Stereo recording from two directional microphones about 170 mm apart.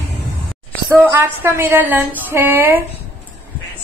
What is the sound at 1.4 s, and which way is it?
A woman's voice, 10° right (ahead or behind).